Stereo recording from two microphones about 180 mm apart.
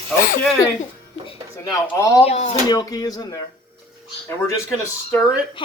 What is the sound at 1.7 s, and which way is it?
Speech, 20° left (ahead or behind).